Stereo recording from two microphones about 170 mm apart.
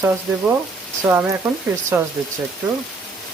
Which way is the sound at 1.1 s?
10° right (ahead or behind).